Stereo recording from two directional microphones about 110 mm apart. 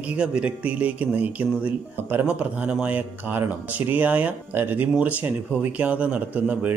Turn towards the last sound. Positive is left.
turn(degrees=-15)  # may be behind; listen again after turning